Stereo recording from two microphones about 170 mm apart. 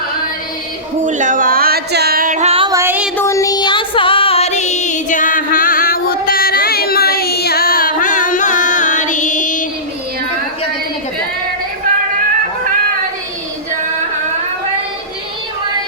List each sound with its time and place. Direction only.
1.0 s music: 45° right (ahead or behind)
2.6 s music: 15° right (ahead or behind)
3.2 s music: 20° left (ahead or behind); by 9.6 s 50° left (ahead or behind)